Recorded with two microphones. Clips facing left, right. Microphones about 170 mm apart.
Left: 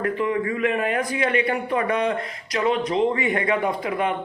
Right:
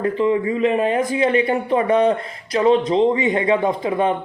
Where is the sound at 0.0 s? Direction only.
25° right (ahead or behind).